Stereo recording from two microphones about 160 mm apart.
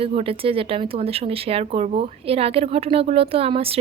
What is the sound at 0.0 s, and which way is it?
Speech, 35° right (ahead or behind).